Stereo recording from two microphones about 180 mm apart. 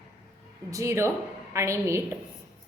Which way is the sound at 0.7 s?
15° right (ahead or behind).